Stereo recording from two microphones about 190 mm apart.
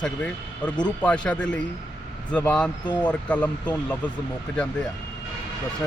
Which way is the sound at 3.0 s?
5° left (ahead or behind).